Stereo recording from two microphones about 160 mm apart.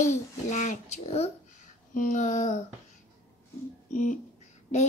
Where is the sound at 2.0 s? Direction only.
55° left (ahead or behind).